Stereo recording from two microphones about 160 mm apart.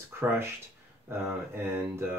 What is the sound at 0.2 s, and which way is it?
Speech, 15° right (ahead or behind).